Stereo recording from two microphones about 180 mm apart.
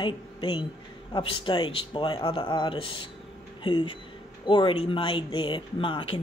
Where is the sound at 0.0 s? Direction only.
30° left (ahead or behind).